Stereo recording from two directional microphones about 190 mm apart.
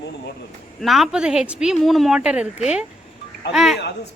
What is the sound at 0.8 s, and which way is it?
Speech, centre (ahead or behind).